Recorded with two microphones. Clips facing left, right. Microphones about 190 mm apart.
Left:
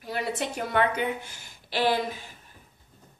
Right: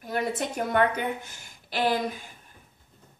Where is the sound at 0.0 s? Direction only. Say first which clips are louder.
Right 3 dB; 50° right (ahead or behind).